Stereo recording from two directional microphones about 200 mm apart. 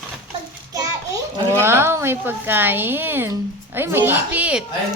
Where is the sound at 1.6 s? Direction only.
10° right (ahead or behind).